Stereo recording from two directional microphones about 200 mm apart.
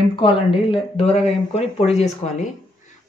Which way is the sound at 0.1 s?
25° left (ahead or behind).